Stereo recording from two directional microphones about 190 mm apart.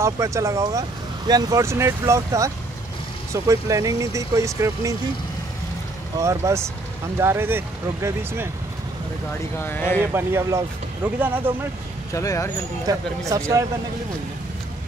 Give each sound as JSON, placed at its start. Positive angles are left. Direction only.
{"t": 0.0, "sound": "speech", "side_deg": -15}
{"t": 6.2, "sound": "speech", "side_deg": -15}
{"t": 9.6, "sound": "speech", "side_deg": 10}
{"t": 10.1, "sound": "speech", "side_deg": -15}
{"t": 12.1, "sound": "speech", "side_deg": 15}
{"t": 12.9, "sound": "speech", "side_deg": -20}